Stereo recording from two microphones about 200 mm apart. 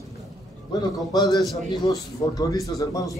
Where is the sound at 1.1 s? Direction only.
20° left (ahead or behind).